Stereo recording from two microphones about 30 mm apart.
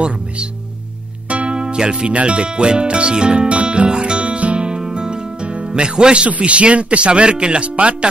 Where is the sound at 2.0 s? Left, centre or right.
Right.